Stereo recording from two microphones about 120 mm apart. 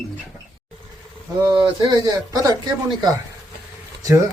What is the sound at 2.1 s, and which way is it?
Speech, 30° right (ahead or behind).